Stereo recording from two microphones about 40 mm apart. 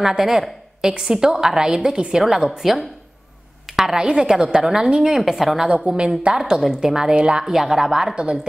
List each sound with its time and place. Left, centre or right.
0.2 s a woman's voice: centre
5.7 s a woman's voice: right
7.4 s a woman's voice: centre